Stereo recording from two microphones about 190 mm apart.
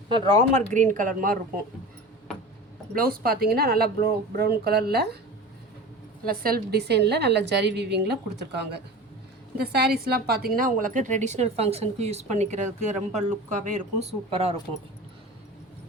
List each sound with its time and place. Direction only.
0.5 s speech: 40° right (ahead or behind)
2.9 s speech: 50° right (ahead or behind)
6.2 s a woman's voice: 50° right (ahead or behind); by 14.5 s 30° right (ahead or behind)